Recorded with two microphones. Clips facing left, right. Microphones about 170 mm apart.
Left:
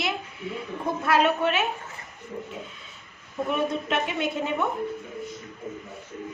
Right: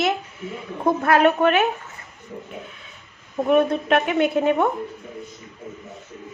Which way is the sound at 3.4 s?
60° right (ahead or behind).